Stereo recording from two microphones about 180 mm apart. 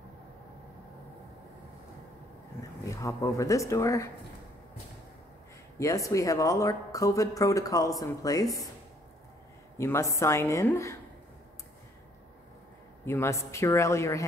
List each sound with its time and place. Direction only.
2.8 s speech: 15° left (ahead or behind)
5.8 s speech: 15° left (ahead or behind)
9.8 s speech: 15° left (ahead or behind)
13.0 s speech: 15° left (ahead or behind)